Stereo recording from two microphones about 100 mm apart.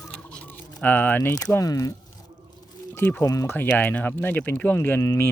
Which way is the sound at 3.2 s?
35° left (ahead or behind).